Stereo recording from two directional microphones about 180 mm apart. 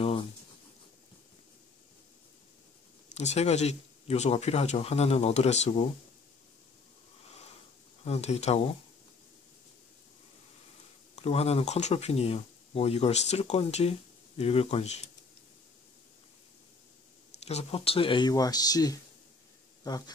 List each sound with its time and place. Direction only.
3.2 s speech: 35° left (ahead or behind)
8.0 s speech: 35° left (ahead or behind)
11.1 s speech: 35° left (ahead or behind)
17.5 s speech: 35° left (ahead or behind)